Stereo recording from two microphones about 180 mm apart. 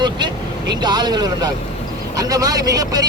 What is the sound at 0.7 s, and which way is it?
A man's voice, 25° right (ahead or behind).